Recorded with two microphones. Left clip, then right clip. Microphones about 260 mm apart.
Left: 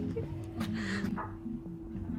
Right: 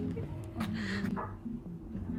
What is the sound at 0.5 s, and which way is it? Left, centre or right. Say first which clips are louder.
Music: left 1 dB; centre.